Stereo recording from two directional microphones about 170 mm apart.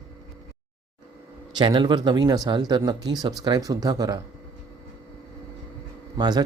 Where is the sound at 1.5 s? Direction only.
30° right (ahead or behind).